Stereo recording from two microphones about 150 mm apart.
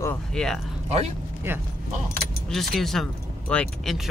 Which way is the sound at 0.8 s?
45° right (ahead or behind).